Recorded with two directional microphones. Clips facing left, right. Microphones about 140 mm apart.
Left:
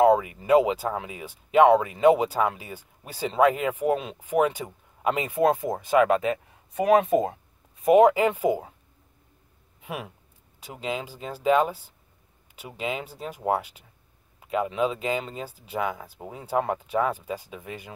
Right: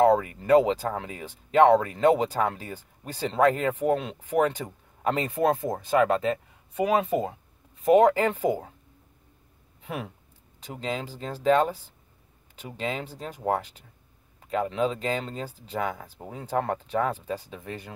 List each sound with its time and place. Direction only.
0.0 s speech: 15° left (ahead or behind)
9.8 s a sound: 10° left (ahead or behind)
10.6 s speech: 10° left (ahead or behind)